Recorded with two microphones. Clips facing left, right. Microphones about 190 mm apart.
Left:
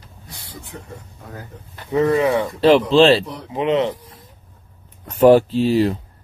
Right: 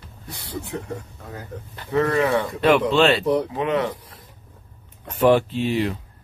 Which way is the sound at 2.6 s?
30° left (ahead or behind).